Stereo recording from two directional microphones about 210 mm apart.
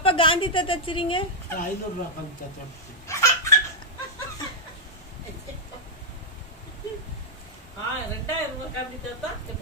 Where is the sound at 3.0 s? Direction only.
15° left (ahead or behind).